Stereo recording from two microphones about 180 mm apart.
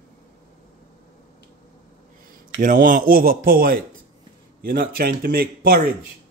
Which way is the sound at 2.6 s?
50° right (ahead or behind).